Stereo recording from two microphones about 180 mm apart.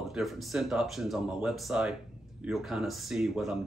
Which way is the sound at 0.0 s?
Centre (ahead or behind).